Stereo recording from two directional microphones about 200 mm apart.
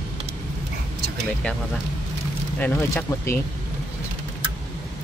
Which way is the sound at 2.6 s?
10° left (ahead or behind).